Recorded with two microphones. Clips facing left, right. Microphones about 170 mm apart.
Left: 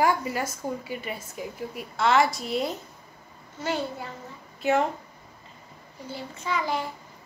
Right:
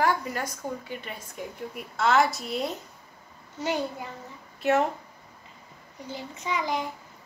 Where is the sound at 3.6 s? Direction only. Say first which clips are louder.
Even; 15° right (ahead or behind).